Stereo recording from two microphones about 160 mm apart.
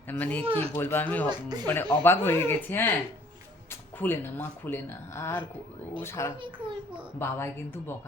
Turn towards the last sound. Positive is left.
turn(degrees=15)  # may be behind; listen again after turning